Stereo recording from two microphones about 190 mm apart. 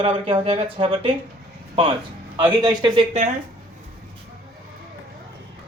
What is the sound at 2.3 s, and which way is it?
Speech, 20° right (ahead or behind).